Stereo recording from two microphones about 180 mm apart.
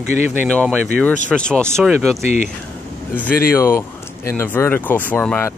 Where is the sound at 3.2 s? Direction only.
10° left (ahead or behind).